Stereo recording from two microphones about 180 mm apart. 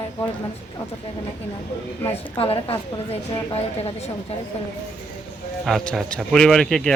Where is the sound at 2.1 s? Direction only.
30° left (ahead or behind).